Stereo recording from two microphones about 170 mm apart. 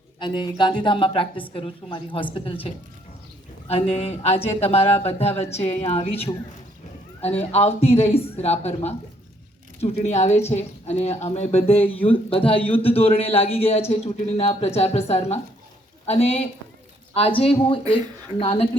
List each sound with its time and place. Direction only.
0.2 s a man's voice: 25° left (ahead or behind)